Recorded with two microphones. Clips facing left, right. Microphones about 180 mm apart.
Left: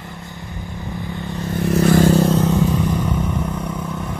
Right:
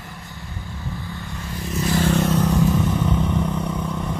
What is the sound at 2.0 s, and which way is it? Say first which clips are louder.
Vehicle: left 2 dB; 35° left (ahead or behind).